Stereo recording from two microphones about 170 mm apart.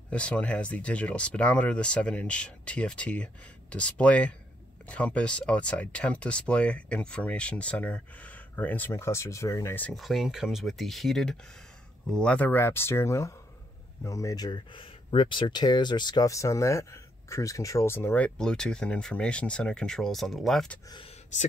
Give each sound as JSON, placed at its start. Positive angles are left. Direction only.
{"t": 0.1, "sound": "speech", "side_deg": 5}